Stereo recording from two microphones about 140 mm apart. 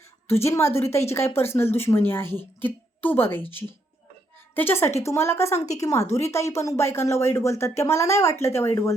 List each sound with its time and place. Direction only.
0.3 s a woman's voice: 20° left (ahead or behind)
4.5 s a woman's voice: 15° left (ahead or behind)